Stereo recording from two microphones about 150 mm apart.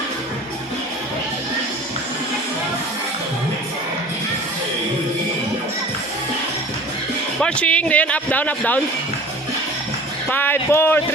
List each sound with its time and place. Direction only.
7.4 s a man's voice: 10° left (ahead or behind)
10.2 s a man's voice: 15° left (ahead or behind)